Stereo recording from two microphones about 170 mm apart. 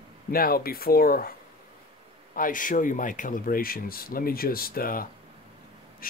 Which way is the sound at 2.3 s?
55° left (ahead or behind).